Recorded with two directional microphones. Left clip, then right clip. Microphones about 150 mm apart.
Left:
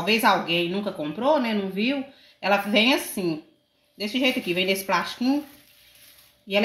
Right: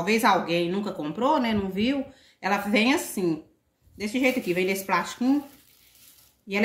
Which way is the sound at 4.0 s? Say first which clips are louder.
Left 1 dB; 25° left (ahead or behind).